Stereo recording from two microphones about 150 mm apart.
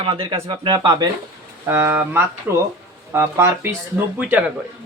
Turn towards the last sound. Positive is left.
turn(degrees=-5)  # may be behind; listen again after turning